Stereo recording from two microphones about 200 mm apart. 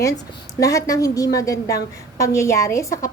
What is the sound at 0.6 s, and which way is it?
A woman's voice, 15° left (ahead or behind).